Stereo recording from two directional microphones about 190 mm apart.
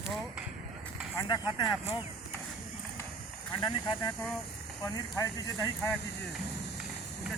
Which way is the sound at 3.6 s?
25° left (ahead or behind).